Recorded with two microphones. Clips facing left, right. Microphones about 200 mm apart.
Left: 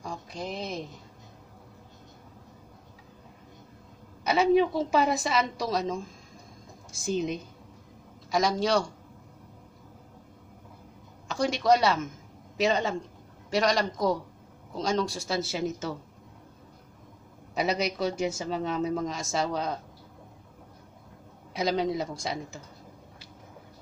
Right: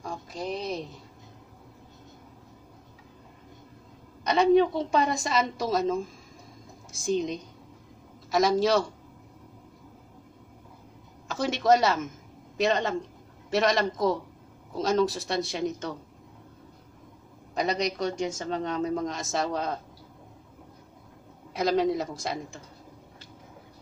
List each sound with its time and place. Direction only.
0.0 s speech: centre (ahead or behind)
4.2 s speech: 5° left (ahead or behind)
11.2 s speech: centre (ahead or behind)
17.6 s speech: 5° left (ahead or behind)
21.5 s speech: centre (ahead or behind)